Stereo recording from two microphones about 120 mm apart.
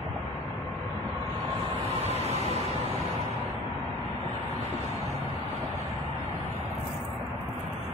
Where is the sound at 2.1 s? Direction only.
60° right (ahead or behind).